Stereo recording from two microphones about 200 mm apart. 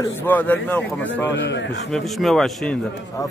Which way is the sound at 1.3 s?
60° left (ahead or behind).